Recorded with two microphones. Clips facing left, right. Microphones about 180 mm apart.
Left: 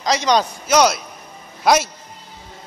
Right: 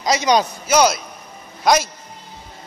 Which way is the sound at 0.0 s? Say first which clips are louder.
Right 1 dB; 10° right (ahead or behind).